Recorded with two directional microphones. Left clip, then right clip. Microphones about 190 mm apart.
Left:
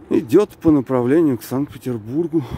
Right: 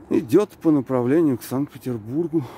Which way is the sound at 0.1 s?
5° left (ahead or behind).